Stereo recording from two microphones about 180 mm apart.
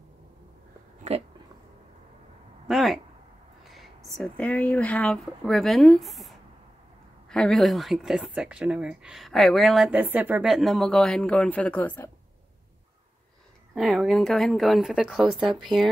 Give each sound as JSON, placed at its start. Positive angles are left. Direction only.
{"t": 2.7, "sound": "speech", "side_deg": 0}
{"t": 13.7, "sound": "speech", "side_deg": 0}